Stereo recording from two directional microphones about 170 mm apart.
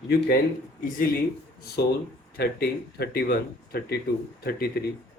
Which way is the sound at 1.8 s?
75° left (ahead or behind).